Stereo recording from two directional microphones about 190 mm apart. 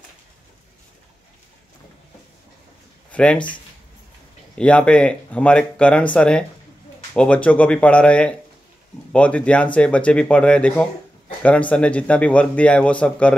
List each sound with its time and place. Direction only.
3.1 s a sound: 5° left (ahead or behind)
3.3 s speech: 25° left (ahead or behind)
4.6 s speech: 5° left (ahead or behind)